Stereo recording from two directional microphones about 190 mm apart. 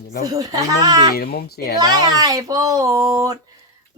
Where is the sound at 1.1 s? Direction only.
55° left (ahead or behind).